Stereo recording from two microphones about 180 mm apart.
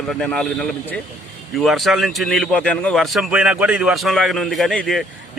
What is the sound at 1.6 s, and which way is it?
A man's voice, centre (ahead or behind).